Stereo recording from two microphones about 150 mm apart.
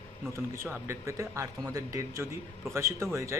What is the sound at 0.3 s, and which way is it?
Speech, 15° right (ahead or behind).